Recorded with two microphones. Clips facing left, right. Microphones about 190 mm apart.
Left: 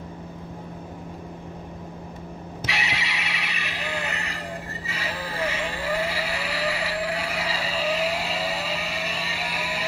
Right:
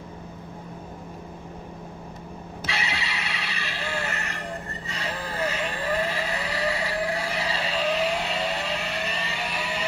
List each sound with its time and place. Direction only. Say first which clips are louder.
2.6 s vehicle: even; 20° left (ahead or behind)